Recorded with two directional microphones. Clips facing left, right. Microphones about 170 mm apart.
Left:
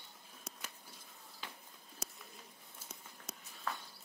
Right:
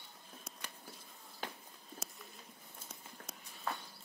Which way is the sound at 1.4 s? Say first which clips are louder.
Right 6 dB; 50° right (ahead or behind).